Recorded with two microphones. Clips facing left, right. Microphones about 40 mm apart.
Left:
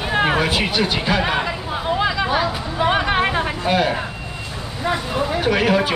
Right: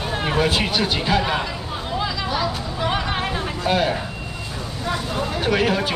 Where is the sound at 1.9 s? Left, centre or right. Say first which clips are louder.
Left 5 dB; left.